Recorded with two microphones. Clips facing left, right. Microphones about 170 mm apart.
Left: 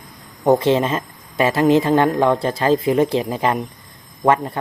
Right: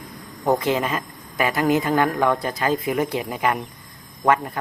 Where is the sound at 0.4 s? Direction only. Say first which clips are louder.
Left 5 dB; 25° left (ahead or behind).